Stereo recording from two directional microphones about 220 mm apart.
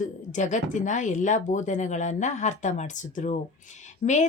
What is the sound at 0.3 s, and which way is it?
Speech, 35° left (ahead or behind).